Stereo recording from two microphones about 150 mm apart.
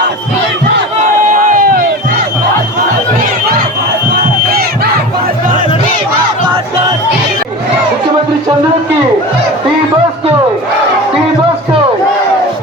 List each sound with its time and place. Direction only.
1.5 s crowd: 65° right (ahead or behind)
4.1 s battle cry: 90° right